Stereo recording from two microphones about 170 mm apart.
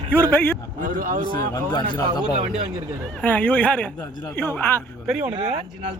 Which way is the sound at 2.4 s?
40° right (ahead or behind).